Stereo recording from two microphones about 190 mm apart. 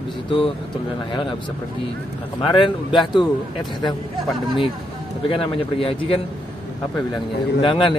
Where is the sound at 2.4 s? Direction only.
25° left (ahead or behind).